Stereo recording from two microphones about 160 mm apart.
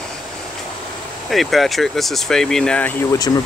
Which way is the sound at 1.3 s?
Centre (ahead or behind).